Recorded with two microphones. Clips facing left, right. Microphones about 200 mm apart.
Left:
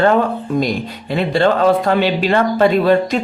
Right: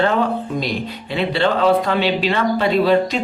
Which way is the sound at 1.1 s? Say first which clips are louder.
Left 4 dB; 45° left (ahead or behind).